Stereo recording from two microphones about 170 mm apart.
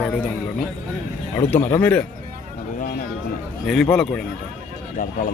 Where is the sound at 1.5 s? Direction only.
15° left (ahead or behind).